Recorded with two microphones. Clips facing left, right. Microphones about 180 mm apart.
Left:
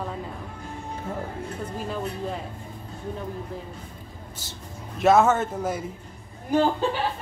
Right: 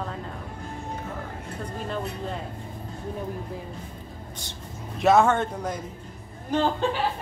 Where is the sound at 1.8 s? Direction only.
5° left (ahead or behind).